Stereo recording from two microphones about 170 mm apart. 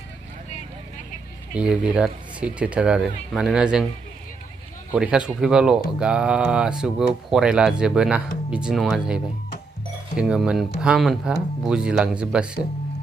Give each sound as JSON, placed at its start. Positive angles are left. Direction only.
{"t": 1.5, "sound": "speech", "side_deg": -5}
{"t": 4.9, "sound": "speech", "side_deg": -5}